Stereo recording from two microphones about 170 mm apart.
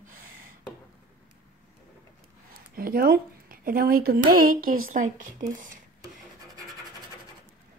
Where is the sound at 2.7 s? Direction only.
60° right (ahead or behind).